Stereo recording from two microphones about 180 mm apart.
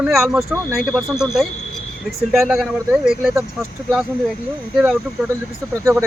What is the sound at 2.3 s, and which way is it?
A man's voice, centre (ahead or behind).